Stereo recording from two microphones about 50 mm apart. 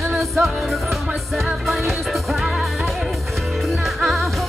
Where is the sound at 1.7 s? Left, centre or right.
Centre.